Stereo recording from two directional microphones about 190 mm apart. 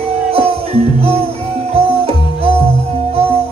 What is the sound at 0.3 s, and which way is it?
Music, 30° right (ahead or behind).